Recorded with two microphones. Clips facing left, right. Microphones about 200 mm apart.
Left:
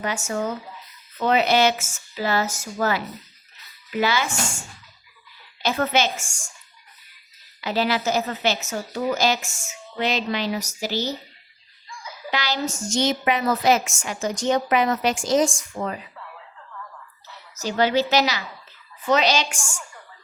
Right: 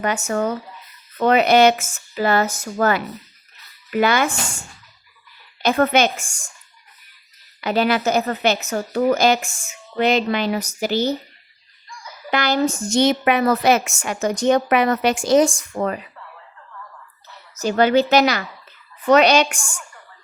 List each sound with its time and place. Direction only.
0.3 s a woman's voice: 60° right (ahead or behind)
5.6 s a woman's voice: 55° right (ahead or behind)
7.6 s a woman's voice: 55° right (ahead or behind)
12.3 s a woman's voice: 55° right (ahead or behind)
17.6 s a woman's voice: 55° right (ahead or behind)